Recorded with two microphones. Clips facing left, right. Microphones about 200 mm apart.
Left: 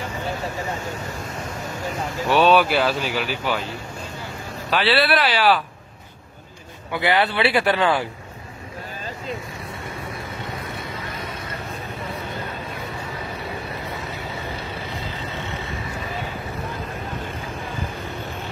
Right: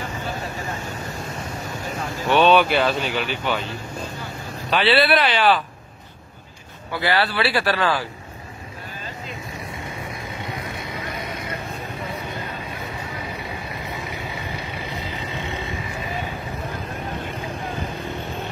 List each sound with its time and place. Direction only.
2.2 s speech: 5° left (ahead or behind)
4.6 s speech: 5° left (ahead or behind)
6.9 s a man's voice: 20° left (ahead or behind)
15.0 s vehicle: 15° right (ahead or behind)